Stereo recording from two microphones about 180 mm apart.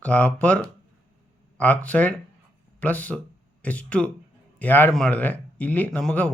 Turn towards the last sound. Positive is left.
turn(degrees=10)  # may be behind; listen again after turning